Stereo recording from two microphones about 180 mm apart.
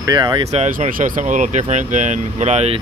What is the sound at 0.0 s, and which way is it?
Speech, 25° right (ahead or behind).